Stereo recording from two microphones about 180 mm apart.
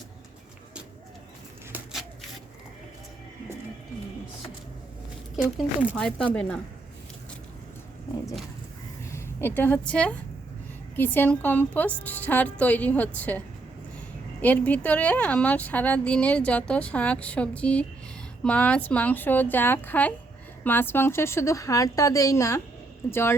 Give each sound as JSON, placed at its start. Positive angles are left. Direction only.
{"t": 1.7, "sound": "a sound", "side_deg": 0}
{"t": 5.4, "sound": "speech", "side_deg": -10}
{"t": 6.0, "sound": "a woman's voice", "side_deg": 5}
{"t": 9.1, "sound": "a woman's voice", "side_deg": 10}
{"t": 14.4, "sound": "a woman's voice", "side_deg": 10}